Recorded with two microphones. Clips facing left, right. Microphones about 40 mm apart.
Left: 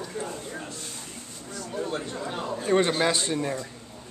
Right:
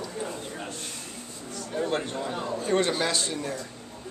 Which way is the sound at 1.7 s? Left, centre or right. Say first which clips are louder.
Right 3 dB; right.